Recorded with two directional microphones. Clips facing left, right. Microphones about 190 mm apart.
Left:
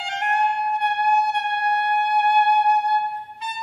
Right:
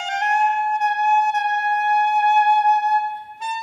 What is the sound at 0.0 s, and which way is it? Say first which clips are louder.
Music: right 2 dB; 45° right (ahead or behind).